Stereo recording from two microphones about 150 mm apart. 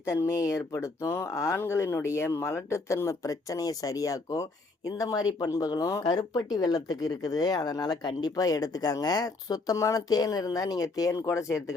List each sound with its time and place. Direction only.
0.0 s speech: 20° left (ahead or behind)